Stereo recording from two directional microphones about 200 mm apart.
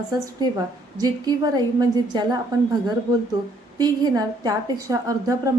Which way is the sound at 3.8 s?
20° right (ahead or behind).